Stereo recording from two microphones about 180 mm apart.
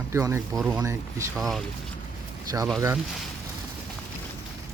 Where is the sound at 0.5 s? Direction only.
Centre (ahead or behind).